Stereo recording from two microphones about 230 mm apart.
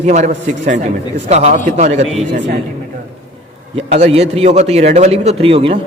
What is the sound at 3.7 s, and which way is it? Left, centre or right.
A man's voice, right.